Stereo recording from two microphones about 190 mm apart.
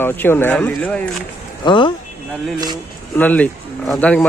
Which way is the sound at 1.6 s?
25° left (ahead or behind).